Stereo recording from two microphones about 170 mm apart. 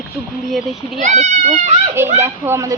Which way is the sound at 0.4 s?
Centre (ahead or behind).